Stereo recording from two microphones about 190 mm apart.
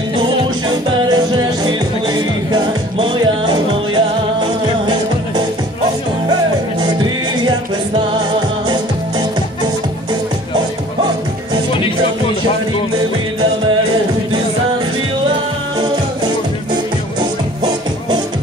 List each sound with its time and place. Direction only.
0.7 s music: 25° right (ahead or behind)